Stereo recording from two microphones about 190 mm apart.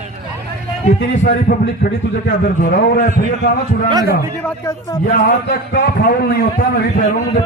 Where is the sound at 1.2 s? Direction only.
65° left (ahead or behind).